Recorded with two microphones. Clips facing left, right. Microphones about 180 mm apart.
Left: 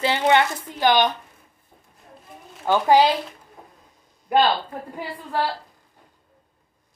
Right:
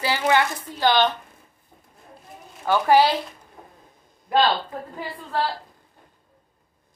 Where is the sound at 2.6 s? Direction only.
15° left (ahead or behind).